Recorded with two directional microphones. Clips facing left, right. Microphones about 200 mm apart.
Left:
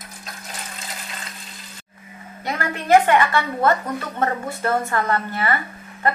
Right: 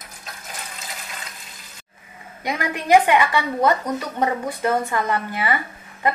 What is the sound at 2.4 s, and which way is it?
A woman's voice, 15° right (ahead or behind).